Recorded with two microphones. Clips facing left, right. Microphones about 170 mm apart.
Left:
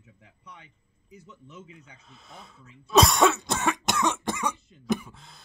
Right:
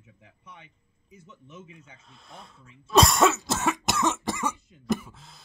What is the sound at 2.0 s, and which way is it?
Cough, centre (ahead or behind).